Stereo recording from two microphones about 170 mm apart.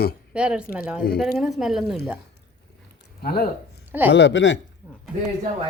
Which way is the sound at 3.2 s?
65° left (ahead or behind).